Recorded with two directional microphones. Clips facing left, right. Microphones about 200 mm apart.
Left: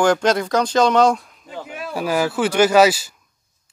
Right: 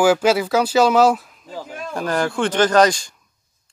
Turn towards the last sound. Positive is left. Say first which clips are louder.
# left 1 dB
turn(degrees=5)  # may be behind; listen again after turning